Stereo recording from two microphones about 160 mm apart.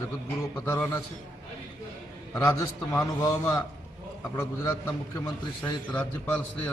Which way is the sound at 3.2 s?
20° left (ahead or behind).